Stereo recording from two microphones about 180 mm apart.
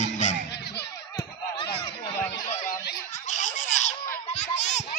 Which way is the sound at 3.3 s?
40° left (ahead or behind).